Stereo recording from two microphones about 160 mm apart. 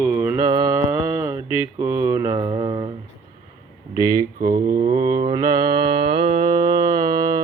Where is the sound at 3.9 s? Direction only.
20° right (ahead or behind).